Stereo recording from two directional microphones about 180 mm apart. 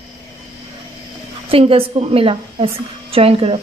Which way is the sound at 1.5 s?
30° right (ahead or behind).